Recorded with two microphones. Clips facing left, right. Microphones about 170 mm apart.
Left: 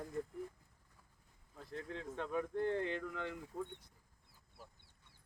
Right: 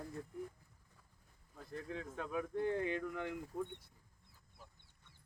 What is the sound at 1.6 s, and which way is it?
Speech, centre (ahead or behind).